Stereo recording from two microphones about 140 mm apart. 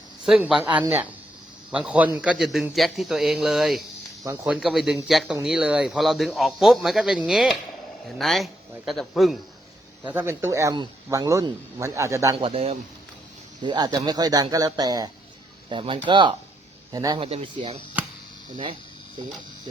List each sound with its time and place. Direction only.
0.3 s speech: 5° right (ahead or behind)
10.0 s speech: 10° right (ahead or behind)
12.4 s a man's voice: 45° right (ahead or behind)
13.6 s speech: 30° right (ahead or behind)
16.9 s speech: 25° right (ahead or behind)
17.2 s speech: 45° right (ahead or behind)